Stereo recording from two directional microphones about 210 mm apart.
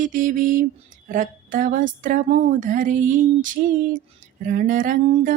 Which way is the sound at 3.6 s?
45° right (ahead or behind).